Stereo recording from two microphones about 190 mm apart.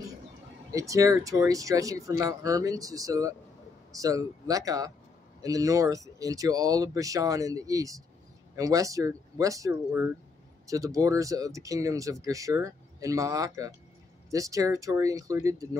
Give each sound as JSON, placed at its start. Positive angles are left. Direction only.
{"t": 0.7, "sound": "speech", "side_deg": -15}